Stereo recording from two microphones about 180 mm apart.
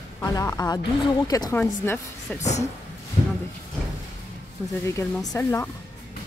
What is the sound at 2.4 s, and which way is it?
Speech, 40° left (ahead or behind).